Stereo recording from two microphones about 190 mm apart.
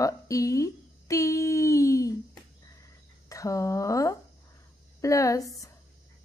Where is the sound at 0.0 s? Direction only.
15° left (ahead or behind).